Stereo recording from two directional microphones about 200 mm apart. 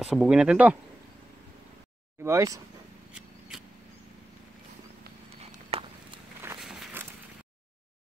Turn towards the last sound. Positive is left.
turn(degrees=0)  # may be behind; listen again after turning